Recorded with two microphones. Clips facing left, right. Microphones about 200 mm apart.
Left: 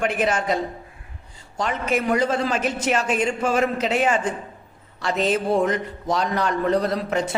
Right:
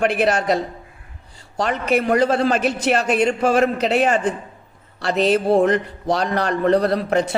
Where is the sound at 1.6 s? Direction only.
65° right (ahead or behind).